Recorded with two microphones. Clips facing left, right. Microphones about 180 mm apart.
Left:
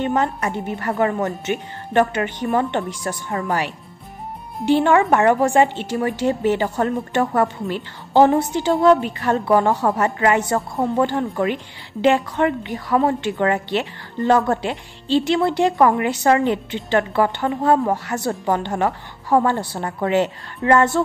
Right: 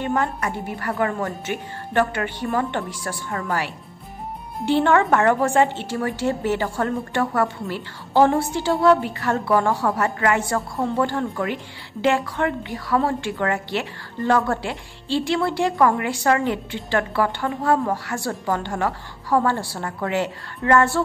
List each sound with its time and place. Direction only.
0.0 s a woman's voice: 25° left (ahead or behind)